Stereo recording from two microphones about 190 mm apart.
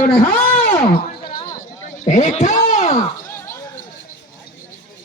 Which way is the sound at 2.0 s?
40° left (ahead or behind).